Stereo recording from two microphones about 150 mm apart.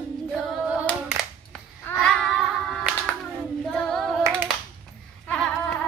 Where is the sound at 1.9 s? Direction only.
5° left (ahead or behind).